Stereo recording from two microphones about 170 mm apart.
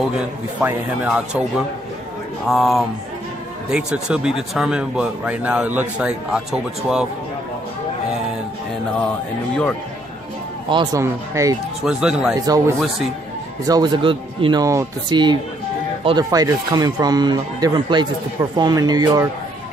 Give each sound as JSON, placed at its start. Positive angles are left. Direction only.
{"t": 0.6, "sound": "speech", "side_deg": -10}
{"t": 2.4, "sound": "a man's voice", "side_deg": 0}
{"t": 10.7, "sound": "speech", "side_deg": -25}
{"t": 11.8, "sound": "a man's voice", "side_deg": -5}
{"t": 12.4, "sound": "speech", "side_deg": -20}
{"t": 16.3, "sound": "speech", "side_deg": -20}